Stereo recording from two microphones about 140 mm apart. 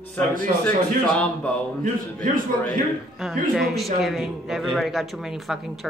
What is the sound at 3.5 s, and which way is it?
Speech, centre (ahead or behind).